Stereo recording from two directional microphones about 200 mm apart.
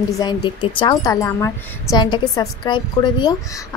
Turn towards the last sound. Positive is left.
turn(degrees=20)  # may be behind; listen again after turning